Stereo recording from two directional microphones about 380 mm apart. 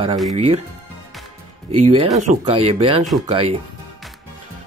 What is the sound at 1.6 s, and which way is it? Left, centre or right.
Speech, centre.